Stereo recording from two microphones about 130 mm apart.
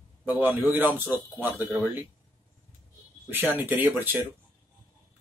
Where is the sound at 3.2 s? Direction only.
15° right (ahead or behind).